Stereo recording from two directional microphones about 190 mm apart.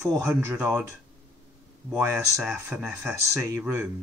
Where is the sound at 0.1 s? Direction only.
5° right (ahead or behind).